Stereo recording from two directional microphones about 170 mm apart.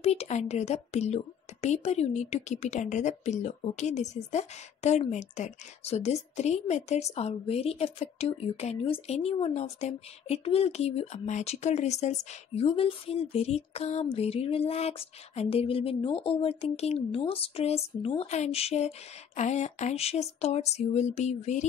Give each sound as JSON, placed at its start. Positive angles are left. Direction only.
{"t": 0.0, "sound": "speech", "side_deg": 40}